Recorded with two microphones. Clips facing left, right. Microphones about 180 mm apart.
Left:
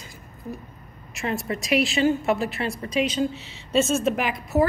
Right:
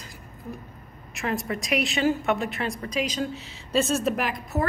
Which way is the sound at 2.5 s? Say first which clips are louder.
Left 3 dB; 30° left (ahead or behind).